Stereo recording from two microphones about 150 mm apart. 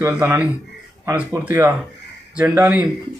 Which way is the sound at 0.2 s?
10° right (ahead or behind).